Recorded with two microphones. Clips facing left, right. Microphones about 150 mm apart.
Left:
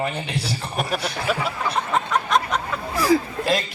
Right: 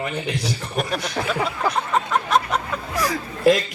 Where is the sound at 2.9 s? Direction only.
30° left (ahead or behind).